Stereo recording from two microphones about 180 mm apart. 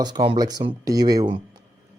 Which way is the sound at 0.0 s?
25° right (ahead or behind).